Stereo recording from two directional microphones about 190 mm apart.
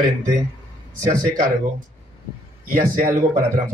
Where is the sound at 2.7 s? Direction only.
45° right (ahead or behind).